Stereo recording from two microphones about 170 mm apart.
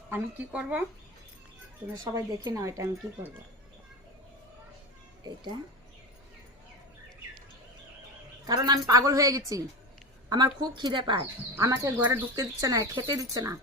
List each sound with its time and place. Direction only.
0.1 s speech: 10° right (ahead or behind)
2.1 s speech: 20° right (ahead or behind)
5.2 s speech: 25° right (ahead or behind)
8.4 s speech: 25° right (ahead or behind)
11.5 s speech: 20° right (ahead or behind)